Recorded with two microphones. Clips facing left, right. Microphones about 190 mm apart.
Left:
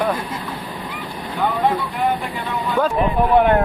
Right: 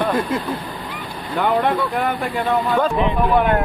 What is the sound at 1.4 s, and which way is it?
Speech, 60° right (ahead or behind).